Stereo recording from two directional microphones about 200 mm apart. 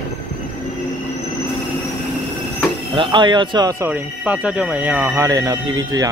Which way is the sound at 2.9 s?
25° right (ahead or behind).